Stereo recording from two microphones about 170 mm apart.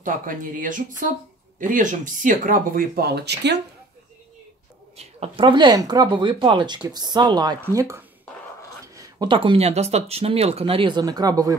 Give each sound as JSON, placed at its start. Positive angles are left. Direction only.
{"t": 0.0, "sound": "speech", "side_deg": -55}
{"t": 4.9, "sound": "speech", "side_deg": -35}